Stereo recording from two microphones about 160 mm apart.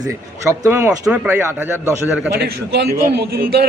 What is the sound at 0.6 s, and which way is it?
Speech, 15° right (ahead or behind).